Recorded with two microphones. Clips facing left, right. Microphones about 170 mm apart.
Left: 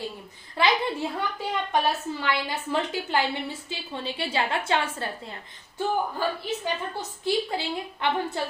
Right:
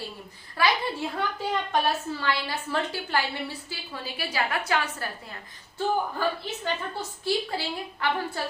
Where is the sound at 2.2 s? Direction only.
20° left (ahead or behind).